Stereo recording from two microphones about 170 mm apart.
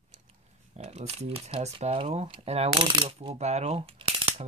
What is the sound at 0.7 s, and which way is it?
Speech, 40° right (ahead or behind).